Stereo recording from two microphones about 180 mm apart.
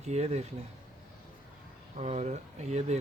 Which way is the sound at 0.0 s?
40° right (ahead or behind).